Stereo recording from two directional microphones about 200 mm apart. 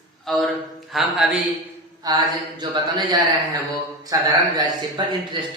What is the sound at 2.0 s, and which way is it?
Speech, 20° right (ahead or behind).